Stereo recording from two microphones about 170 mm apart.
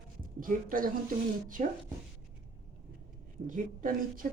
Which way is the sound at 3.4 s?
50° right (ahead or behind).